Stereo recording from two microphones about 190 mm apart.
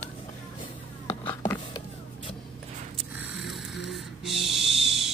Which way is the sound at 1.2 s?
15° left (ahead or behind).